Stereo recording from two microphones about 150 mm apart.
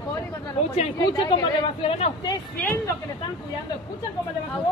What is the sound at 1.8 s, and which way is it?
Speech, 35° left (ahead or behind).